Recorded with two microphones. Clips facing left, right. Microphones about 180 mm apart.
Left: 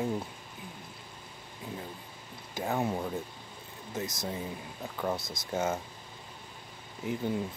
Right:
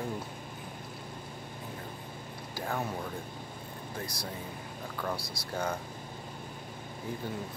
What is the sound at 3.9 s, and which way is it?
Speech, 20° left (ahead or behind).